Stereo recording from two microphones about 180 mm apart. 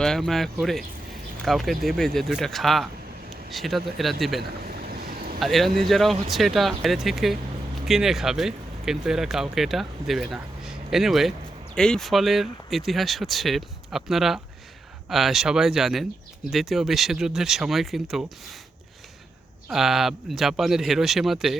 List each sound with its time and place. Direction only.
0.0 s speech: centre (ahead or behind)
4.4 s a sound: 60° right (ahead or behind)
5.4 s speech: centre (ahead or behind)
19.6 s speech: centre (ahead or behind)